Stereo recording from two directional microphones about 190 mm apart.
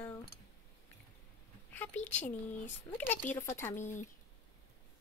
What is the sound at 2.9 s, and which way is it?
Speech, 10° left (ahead or behind).